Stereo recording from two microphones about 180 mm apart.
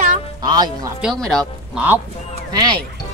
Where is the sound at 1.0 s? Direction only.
5° left (ahead or behind).